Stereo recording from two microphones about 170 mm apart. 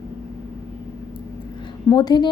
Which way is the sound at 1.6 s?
25° left (ahead or behind).